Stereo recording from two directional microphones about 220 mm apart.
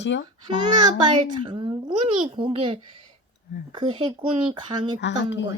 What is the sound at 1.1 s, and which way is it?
A child's voice, 20° right (ahead or behind).